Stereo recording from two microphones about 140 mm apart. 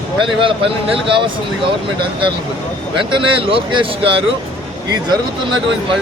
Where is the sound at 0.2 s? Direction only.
40° right (ahead or behind).